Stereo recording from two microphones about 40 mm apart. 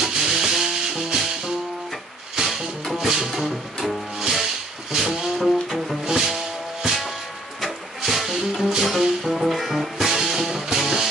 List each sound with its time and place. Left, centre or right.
0.0 s music: centre
8.0 s music: centre